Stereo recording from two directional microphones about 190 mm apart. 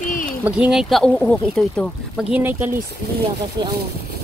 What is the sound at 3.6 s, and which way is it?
Speech, 20° right (ahead or behind).